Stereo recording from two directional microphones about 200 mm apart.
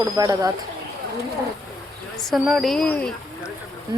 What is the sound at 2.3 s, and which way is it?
Speech, centre (ahead or behind).